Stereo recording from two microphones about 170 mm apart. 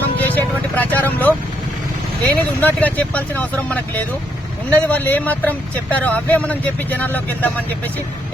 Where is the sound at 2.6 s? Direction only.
10° left (ahead or behind).